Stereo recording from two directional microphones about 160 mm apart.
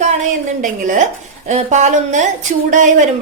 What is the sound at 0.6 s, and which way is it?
Speech, 50° right (ahead or behind).